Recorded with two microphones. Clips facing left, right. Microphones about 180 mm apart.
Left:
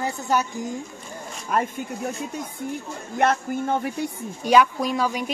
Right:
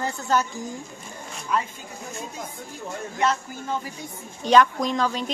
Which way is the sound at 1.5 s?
50° left (ahead or behind).